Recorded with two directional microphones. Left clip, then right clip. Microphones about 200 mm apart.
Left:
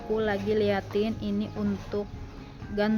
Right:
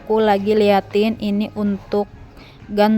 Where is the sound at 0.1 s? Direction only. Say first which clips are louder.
Right 11 dB; 40° right (ahead or behind).